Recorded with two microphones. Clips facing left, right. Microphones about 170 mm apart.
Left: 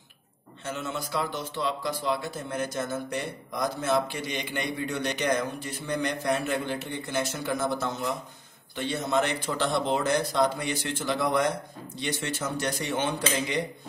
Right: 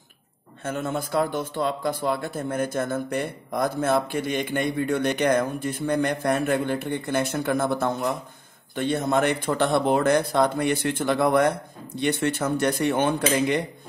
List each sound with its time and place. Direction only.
0.7 s a man's voice: 50° right (ahead or behind)